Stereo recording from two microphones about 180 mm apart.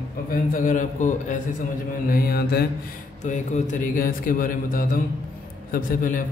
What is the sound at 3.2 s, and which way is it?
Speech, 40° left (ahead or behind).